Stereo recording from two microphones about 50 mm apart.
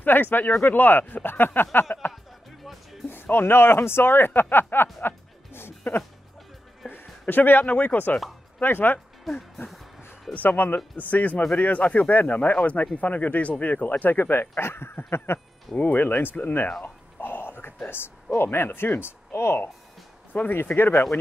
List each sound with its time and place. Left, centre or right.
0.0 s speech: left
2.6 s music: centre
3.1 s speech: left
5.0 s music: left
7.6 s speech: left
10.3 s speech: left
15.8 s speech: left
16.8 s a sound: left
17.8 s speech: left
20.3 s speech: left
20.7 s speech: left